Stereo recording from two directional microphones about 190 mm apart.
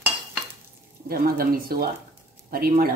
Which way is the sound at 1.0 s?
50° right (ahead or behind).